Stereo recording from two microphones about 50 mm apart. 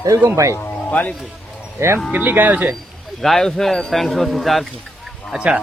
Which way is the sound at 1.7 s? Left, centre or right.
Right.